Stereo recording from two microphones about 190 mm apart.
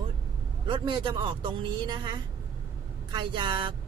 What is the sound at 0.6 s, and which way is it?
Speech, 25° right (ahead or behind).